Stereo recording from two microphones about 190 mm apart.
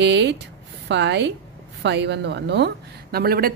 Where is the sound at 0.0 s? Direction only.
65° right (ahead or behind).